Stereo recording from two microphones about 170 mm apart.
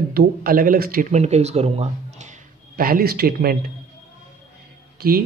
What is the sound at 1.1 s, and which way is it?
Speech, 40° right (ahead or behind).